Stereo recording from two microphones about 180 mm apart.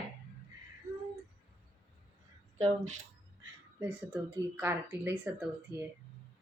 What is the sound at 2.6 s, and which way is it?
Speech, 40° right (ahead or behind).